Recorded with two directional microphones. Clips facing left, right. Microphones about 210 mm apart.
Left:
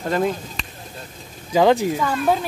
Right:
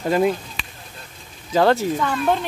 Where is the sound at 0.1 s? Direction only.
5° right (ahead or behind).